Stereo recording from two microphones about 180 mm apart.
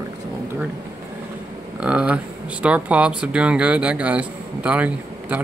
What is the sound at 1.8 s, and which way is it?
Speech, 5° right (ahead or behind).